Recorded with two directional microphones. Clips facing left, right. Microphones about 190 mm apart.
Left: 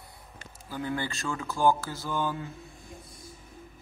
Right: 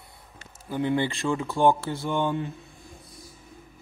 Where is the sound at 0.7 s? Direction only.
25° right (ahead or behind).